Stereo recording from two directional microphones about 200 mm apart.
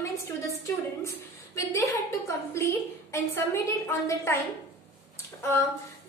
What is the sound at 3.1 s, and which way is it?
A woman's voice, 15° left (ahead or behind).